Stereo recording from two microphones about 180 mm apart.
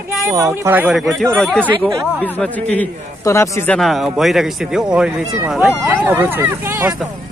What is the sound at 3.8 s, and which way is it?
Speech, centre (ahead or behind).